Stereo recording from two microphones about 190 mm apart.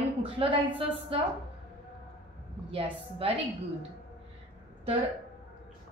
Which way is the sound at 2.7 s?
30° right (ahead or behind).